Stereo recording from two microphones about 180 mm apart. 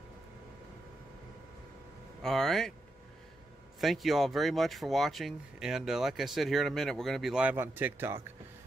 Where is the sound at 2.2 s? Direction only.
Centre (ahead or behind).